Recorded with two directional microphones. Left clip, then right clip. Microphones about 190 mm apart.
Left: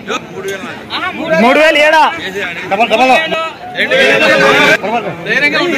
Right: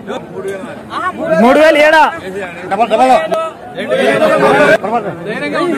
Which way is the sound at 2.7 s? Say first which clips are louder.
Even; 20° left (ahead or behind).